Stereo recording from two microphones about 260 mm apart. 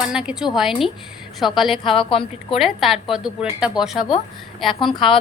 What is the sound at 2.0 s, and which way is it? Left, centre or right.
Speech, centre.